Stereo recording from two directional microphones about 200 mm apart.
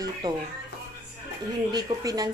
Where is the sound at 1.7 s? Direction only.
20° right (ahead or behind).